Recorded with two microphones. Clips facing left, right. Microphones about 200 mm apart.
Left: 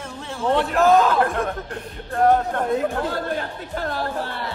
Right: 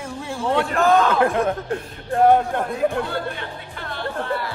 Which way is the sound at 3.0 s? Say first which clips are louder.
Left 2 dB; 40° left (ahead or behind).